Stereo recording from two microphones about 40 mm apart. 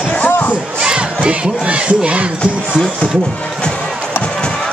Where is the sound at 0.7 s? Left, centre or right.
Right.